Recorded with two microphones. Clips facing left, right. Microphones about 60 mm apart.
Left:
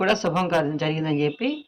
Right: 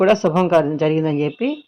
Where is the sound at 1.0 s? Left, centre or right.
Right.